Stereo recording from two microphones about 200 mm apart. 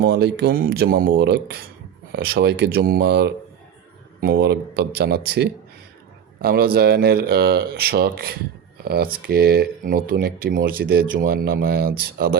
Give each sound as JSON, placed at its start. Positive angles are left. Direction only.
{"t": 0.0, "sound": "a man's voice", "side_deg": -55}